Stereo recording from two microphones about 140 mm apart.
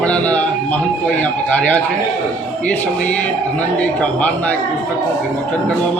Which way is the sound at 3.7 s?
10° left (ahead or behind).